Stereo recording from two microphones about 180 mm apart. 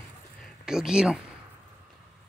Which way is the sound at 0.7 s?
5° right (ahead or behind).